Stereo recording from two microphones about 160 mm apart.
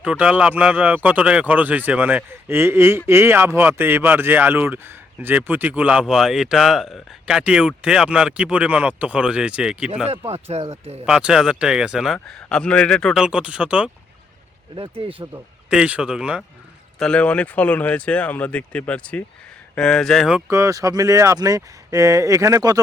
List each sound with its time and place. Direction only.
0.0 s speech: 5° right (ahead or behind)
10.1 s speech: 40° right (ahead or behind)
11.0 s speech: 5° right (ahead or behind)
14.8 s speech: 35° right (ahead or behind)
15.7 s speech: 5° right (ahead or behind)
17.0 s speech: 5° left (ahead or behind)
20.5 s speech: 20° right (ahead or behind)